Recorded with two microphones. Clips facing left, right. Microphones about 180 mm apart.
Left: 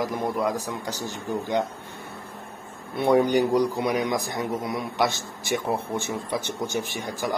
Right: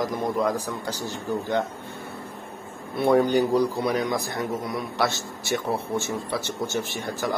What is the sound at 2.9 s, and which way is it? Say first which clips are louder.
A man's voice: even; 15° left (ahead or behind).